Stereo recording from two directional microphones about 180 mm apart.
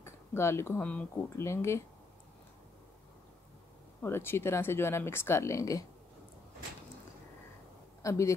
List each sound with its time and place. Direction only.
0.0 s speech: 15° left (ahead or behind)
4.0 s speech: 15° left (ahead or behind)
8.0 s a man's voice: 15° left (ahead or behind)